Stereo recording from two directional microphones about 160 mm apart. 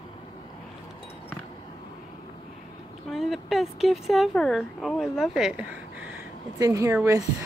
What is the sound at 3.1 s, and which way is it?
Speech, centre (ahead or behind).